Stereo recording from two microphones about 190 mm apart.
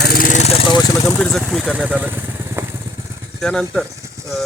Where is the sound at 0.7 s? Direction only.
20° left (ahead or behind).